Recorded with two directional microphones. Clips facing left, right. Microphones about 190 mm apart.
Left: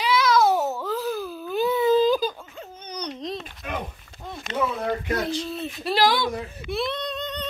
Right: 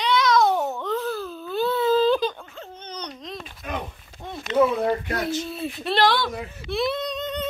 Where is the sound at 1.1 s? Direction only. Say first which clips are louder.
Left 1 dB; 10° left (ahead or behind).